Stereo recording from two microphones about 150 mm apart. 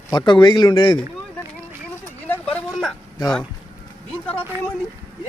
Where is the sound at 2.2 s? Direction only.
10° left (ahead or behind).